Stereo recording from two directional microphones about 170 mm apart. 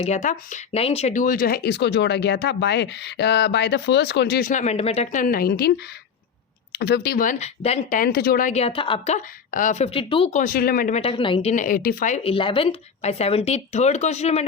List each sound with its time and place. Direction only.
0.0 s speech: 45° left (ahead or behind); by 4.4 s 80° left
4.4 s speech: 45° left (ahead or behind)
5.2 s a woman's voice: 60° left (ahead or behind)
6.7 s speech: 75° left (ahead or behind); by 7.9 s 40° left (ahead or behind)
7.9 s speech: 60° left (ahead or behind); by 9.1 s 30° left (ahead or behind)
9.1 s speech: 50° left (ahead or behind)
10.4 s a woman's voice: 60° left (ahead or behind)
10.9 s speech: 30° left (ahead or behind)
11.5 s speech: 55° left (ahead or behind)